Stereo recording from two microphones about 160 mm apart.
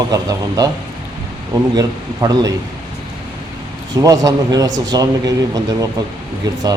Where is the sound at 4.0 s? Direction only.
20° right (ahead or behind).